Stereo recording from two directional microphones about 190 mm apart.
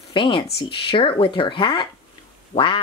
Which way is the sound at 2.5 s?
25° left (ahead or behind).